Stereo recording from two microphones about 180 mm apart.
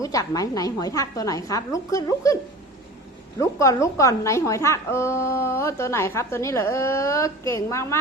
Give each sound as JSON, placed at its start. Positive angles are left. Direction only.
{"t": 0.0, "sound": "a woman's voice", "side_deg": 20}